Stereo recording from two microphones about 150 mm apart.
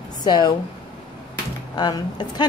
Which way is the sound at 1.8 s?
30° left (ahead or behind).